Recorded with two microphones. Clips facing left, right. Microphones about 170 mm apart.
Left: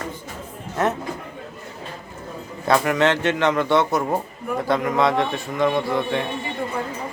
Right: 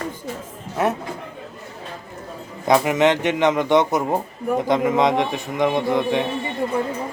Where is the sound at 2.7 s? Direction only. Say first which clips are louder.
Right 2 dB; 15° right (ahead or behind).